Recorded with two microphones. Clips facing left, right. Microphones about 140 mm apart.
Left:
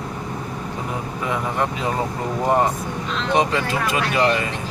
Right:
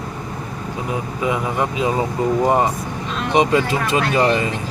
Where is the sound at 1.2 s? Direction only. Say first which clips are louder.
Right 2 dB; 5° right (ahead or behind); by 4.4 s 25° right (ahead or behind).